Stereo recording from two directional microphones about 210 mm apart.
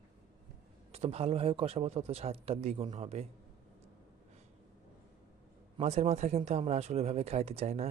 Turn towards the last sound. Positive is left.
turn(degrees=-30)  # may be behind; listen again after turning